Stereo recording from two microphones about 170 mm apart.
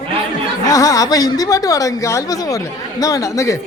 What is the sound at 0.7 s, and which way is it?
Speech, 20° left (ahead or behind).